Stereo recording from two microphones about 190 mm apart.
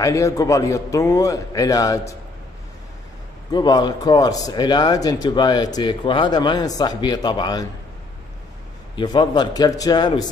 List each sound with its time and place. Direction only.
0.0 s a man's voice: 15° left (ahead or behind)
3.5 s speech: 20° left (ahead or behind)
8.9 s speech: 25° left (ahead or behind)